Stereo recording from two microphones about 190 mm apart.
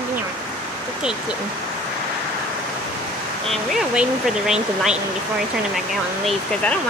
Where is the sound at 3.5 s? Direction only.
Centre (ahead or behind).